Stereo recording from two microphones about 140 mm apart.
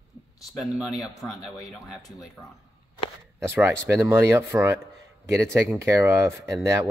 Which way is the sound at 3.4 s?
15° right (ahead or behind).